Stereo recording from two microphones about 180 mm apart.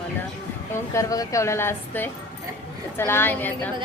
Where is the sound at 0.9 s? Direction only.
20° left (ahead or behind).